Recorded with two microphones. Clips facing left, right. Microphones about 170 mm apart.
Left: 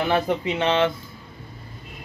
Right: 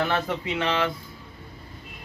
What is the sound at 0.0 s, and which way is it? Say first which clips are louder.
Speech: left 4 dB; 15° left (ahead or behind).